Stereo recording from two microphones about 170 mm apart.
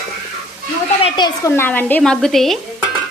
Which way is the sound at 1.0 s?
25° left (ahead or behind).